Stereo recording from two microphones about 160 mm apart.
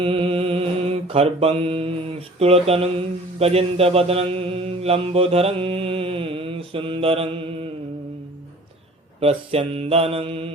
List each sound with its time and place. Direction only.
0.0 s mantra: 35° right (ahead or behind)
9.2 s mantra: 40° right (ahead or behind)